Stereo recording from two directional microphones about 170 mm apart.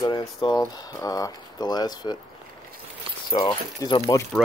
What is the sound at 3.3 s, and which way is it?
Speech, 25° left (ahead or behind).